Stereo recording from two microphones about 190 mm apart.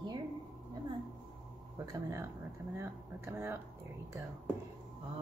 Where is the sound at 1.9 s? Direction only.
15° right (ahead or behind).